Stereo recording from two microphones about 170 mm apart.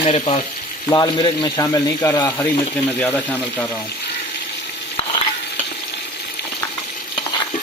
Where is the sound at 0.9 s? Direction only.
25° left (ahead or behind).